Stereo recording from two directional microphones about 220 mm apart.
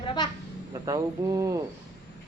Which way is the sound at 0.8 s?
15° right (ahead or behind).